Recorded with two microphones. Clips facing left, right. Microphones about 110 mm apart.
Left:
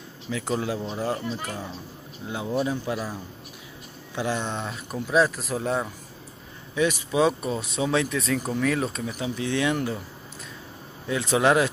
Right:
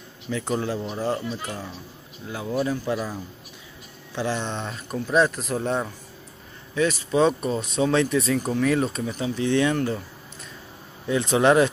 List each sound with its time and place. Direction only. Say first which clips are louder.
0.3 s speech: right 1 dB; 5° left (ahead or behind)
2.2 s speech: right 1 dB; 20° left (ahead or behind)
4.1 s speech: right 1 dB; 10° left (ahead or behind)
6.7 s speech: right 2 dB; 15° left (ahead or behind)
11.1 s speech: right 2 dB; 5° left (ahead or behind)